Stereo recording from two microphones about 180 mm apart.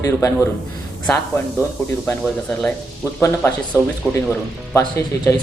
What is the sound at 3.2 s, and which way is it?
Speech, 15° left (ahead or behind).